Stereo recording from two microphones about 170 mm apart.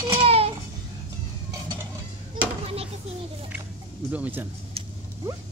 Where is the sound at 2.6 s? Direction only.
35° right (ahead or behind).